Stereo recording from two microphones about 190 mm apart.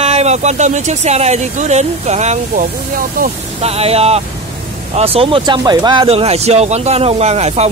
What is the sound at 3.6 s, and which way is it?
Speech, 30° right (ahead or behind).